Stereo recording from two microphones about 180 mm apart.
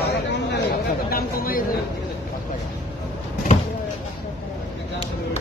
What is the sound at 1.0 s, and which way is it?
Speech, 55° left (ahead or behind).